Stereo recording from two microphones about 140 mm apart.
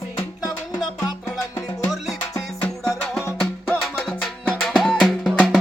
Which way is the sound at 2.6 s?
5° left (ahead or behind).